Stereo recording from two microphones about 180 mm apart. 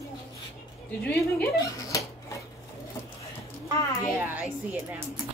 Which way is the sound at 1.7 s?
20° left (ahead or behind).